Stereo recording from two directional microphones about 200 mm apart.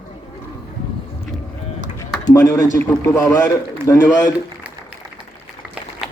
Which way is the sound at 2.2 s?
15° left (ahead or behind).